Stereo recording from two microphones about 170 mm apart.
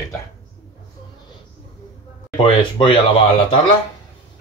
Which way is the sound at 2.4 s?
30° left (ahead or behind).